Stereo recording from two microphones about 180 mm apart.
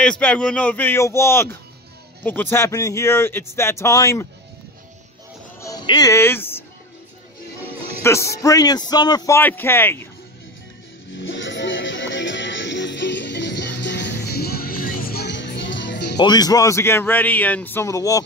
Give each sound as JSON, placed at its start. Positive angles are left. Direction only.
{"t": 0.0, "sound": "speech", "side_deg": 5}
{"t": 5.6, "sound": "speech", "side_deg": 20}
{"t": 8.0, "sound": "speech", "side_deg": 15}
{"t": 11.1, "sound": "music", "side_deg": 90}
{"t": 16.2, "sound": "speech", "side_deg": 20}